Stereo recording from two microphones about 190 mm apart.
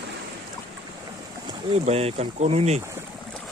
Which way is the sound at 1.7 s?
35° right (ahead or behind).